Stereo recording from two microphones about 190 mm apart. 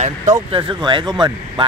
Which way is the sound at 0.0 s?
40° right (ahead or behind).